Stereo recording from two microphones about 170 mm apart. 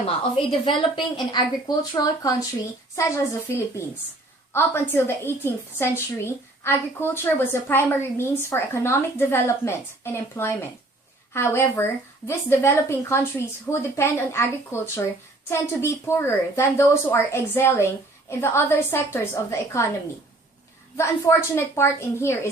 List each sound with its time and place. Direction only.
0.0 s a woman's voice: 30° left (ahead or behind)
3.5 s a woman's voice: 15° left (ahead or behind)
20.9 s a woman's voice: 15° left (ahead or behind)